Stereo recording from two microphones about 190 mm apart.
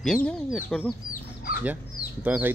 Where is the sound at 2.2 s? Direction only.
10° right (ahead or behind).